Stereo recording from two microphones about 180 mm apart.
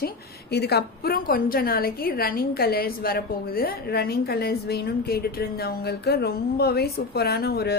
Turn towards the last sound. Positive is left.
turn(degrees=60)  # may be behind; listen again after turning